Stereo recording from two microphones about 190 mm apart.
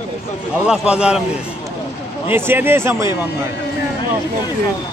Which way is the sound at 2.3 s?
10° right (ahead or behind).